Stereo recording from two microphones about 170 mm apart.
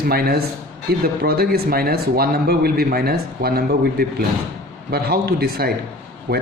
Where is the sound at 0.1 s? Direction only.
65° right (ahead or behind).